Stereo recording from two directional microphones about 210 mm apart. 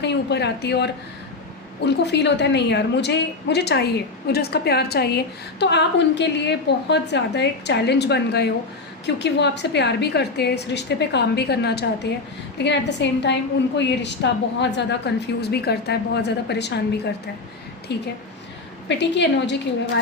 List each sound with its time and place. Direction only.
0.0 s a woman's voice: 55° left (ahead or behind)
17.9 s a woman's voice: 50° left (ahead or behind)